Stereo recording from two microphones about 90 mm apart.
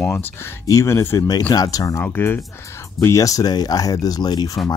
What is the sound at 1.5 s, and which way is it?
Speech, 45° left (ahead or behind).